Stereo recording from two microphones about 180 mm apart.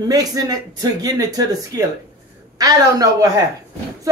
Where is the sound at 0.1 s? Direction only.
20° right (ahead or behind).